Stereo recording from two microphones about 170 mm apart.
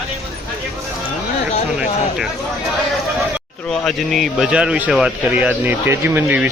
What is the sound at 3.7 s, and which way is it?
A man's voice, centre (ahead or behind).